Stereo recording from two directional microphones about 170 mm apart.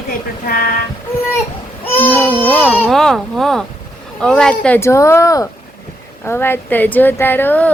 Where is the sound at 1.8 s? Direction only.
10° left (ahead or behind).